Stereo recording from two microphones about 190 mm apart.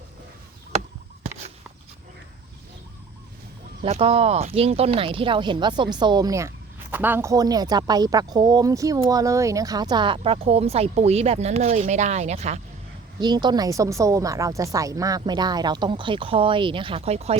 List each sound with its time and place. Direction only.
3.8 s speech: 35° right (ahead or behind)
13.1 s speech: 20° right (ahead or behind)